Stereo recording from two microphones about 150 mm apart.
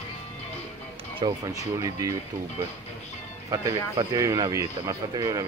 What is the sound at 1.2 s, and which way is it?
Speech, 35° right (ahead or behind).